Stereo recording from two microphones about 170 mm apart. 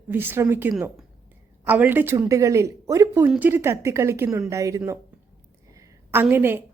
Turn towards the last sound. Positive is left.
turn(degrees=-10)  # may be behind; listen again after turning